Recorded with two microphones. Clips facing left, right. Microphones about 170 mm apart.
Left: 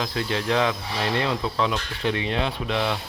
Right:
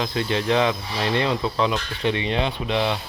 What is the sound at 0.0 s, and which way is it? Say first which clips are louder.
Speech: right 3 dB; centre (ahead or behind).